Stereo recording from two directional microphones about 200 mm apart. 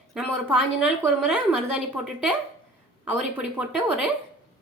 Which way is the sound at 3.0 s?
10° right (ahead or behind).